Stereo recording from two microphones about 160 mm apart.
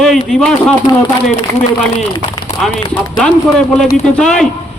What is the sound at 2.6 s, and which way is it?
Speech, centre (ahead or behind).